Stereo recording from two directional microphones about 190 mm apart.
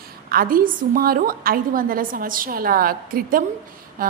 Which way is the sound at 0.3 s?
50° right (ahead or behind).